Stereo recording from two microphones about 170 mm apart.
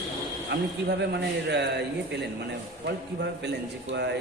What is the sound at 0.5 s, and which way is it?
Speech, 80° right.